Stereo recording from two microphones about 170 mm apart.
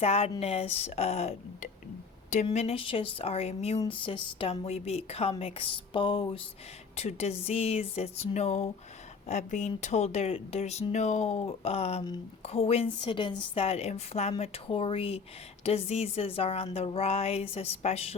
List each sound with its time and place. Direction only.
0.0 s speech: 35° left (ahead or behind)